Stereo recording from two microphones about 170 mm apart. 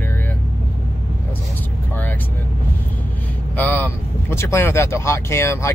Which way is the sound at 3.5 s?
10° left (ahead or behind).